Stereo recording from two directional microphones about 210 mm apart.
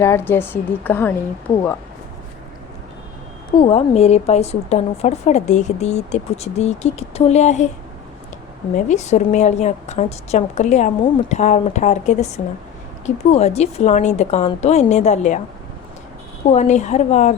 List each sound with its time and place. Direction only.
0.0 s a woman's voice: 10° left (ahead or behind)
3.6 s a woman's voice: 30° left (ahead or behind)
8.7 s a woman's voice: 35° left (ahead or behind)
16.5 s a woman's voice: 35° left (ahead or behind)